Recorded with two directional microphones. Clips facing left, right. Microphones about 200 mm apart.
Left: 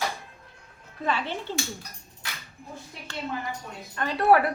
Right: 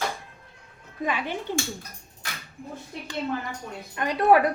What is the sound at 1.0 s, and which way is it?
Speech, 15° right (ahead or behind).